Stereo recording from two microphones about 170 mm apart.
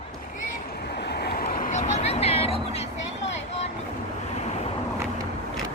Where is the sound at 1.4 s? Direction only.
50° left (ahead or behind).